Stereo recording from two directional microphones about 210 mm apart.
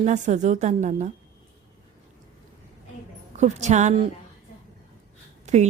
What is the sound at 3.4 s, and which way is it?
Speech, 35° right (ahead or behind).